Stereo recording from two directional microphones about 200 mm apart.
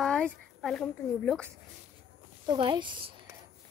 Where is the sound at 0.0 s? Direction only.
5° left (ahead or behind).